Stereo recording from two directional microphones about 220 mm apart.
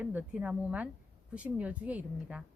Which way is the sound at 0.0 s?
5° right (ahead or behind).